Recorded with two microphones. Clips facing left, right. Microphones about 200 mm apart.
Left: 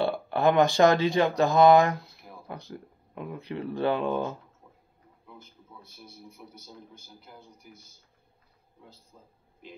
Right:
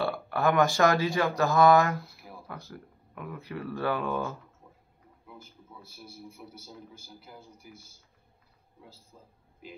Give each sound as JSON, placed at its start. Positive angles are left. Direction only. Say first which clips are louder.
{"t": 0.0, "sound": "speech", "louder": "left 3 dB", "side_deg": 20}
{"t": 5.2, "sound": "a man's voice", "louder": "right 1 dB", "side_deg": -10}
{"t": 9.1, "sound": "speech", "louder": "right 1 dB", "side_deg": 0}